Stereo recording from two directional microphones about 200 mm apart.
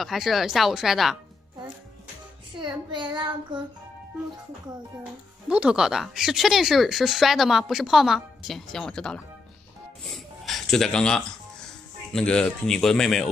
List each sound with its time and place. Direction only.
0.0 s speech: centre (ahead or behind)
2.6 s child singing: 20° right (ahead or behind)
5.5 s speech: 5° right (ahead or behind)